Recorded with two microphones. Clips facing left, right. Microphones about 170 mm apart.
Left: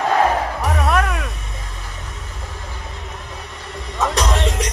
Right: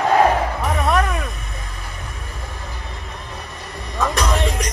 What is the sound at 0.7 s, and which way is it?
Music, centre (ahead or behind).